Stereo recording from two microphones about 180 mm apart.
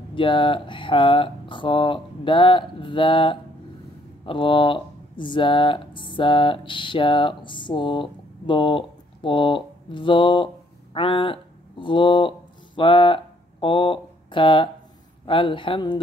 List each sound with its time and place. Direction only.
0.1 s speech: 30° left (ahead or behind)